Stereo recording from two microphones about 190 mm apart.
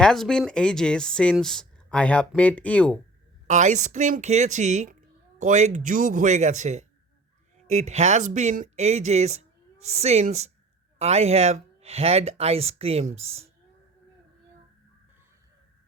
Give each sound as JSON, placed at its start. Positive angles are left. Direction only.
{"t": 0.0, "sound": "speech", "side_deg": 5}
{"t": 3.4, "sound": "a woman's voice", "side_deg": -40}